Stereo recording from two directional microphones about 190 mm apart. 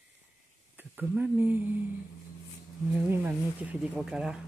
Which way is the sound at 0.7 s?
10° right (ahead or behind).